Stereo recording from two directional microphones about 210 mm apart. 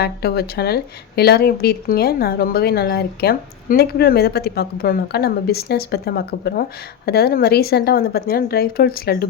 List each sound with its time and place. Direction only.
0.0 s a woman's voice: 50° left (ahead or behind)